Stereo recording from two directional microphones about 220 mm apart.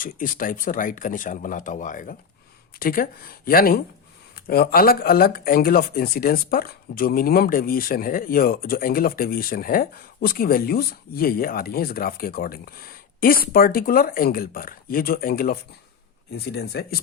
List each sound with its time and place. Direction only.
0.0 s speech: 40° left (ahead or behind)